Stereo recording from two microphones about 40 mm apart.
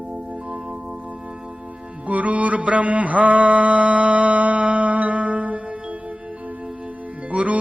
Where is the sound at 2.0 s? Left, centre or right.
Right.